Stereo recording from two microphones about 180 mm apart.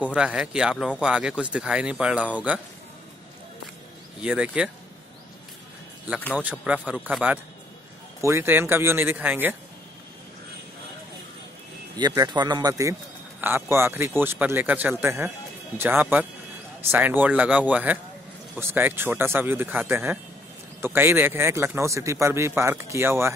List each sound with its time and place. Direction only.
0.0 s speech: 5° right (ahead or behind)
4.2 s speech: 5° right (ahead or behind)
6.9 s a man's voice: 5° right (ahead or behind)
12.1 s a man's voice: 20° right (ahead or behind)